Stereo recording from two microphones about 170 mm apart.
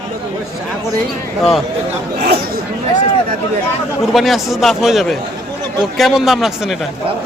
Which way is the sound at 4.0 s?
Centre (ahead or behind).